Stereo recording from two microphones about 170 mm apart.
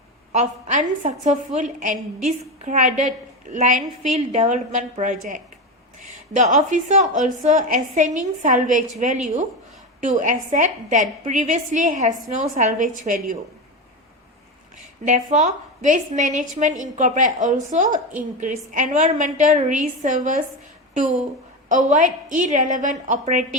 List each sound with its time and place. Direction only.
0.3 s a woman's voice: 50° right (ahead or behind)
6.3 s a woman's voice: 45° right (ahead or behind)
15.0 s a woman's voice: 45° right (ahead or behind)